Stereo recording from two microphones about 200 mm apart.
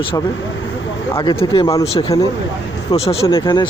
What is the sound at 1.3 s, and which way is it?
Speech, 25° left (ahead or behind).